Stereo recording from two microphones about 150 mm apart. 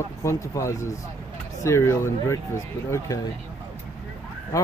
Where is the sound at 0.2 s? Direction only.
20° left (ahead or behind).